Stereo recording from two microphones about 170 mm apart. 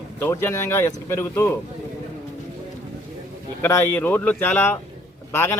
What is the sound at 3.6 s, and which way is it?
Speech, 15° left (ahead or behind).